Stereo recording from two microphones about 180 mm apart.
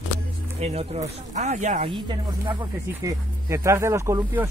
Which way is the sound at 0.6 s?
35° right (ahead or behind).